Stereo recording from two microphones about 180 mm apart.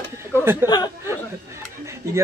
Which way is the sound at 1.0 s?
15° right (ahead or behind).